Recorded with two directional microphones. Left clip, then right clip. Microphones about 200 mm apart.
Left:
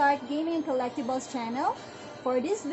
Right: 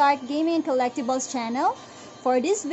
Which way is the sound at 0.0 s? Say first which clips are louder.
Right 5 dB; 45° right (ahead or behind).